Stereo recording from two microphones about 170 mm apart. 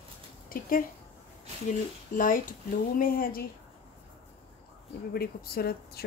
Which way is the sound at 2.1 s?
55° left (ahead or behind).